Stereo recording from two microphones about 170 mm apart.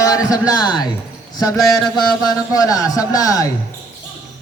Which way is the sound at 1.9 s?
25° left (ahead or behind).